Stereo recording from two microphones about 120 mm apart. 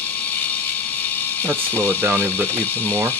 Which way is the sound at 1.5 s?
15° left (ahead or behind).